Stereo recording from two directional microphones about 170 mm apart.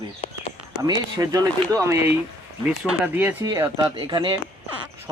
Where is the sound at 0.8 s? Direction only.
20° right (ahead or behind).